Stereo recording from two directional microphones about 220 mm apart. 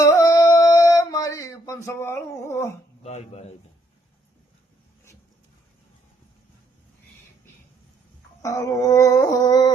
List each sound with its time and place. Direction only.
0.0 s a sound: 15° left (ahead or behind)
3.0 s speech: 30° left (ahead or behind)
8.4 s speech: 15° left (ahead or behind)